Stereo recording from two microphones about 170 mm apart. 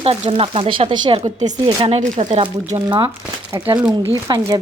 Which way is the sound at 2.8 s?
30° right (ahead or behind).